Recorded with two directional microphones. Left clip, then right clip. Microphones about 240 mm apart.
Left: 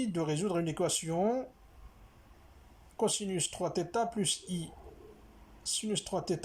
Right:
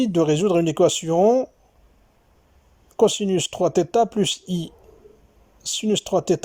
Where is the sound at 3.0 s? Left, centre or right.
Right.